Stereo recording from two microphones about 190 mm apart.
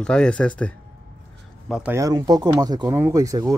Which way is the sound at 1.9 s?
20° right (ahead or behind).